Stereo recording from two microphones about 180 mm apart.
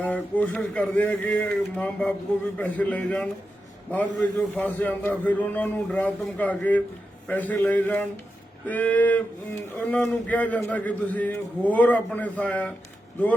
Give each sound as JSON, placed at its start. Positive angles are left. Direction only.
{"t": 0.0, "sound": "a man's voice", "side_deg": 10}